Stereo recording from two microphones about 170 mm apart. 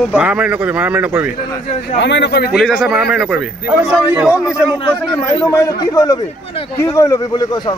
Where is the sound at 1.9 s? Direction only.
90° left.